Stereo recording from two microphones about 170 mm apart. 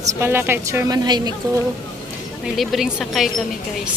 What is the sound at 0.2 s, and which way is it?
A woman's voice, 15° right (ahead or behind).